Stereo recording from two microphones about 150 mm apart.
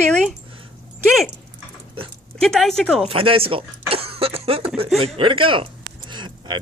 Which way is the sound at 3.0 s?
40° right (ahead or behind).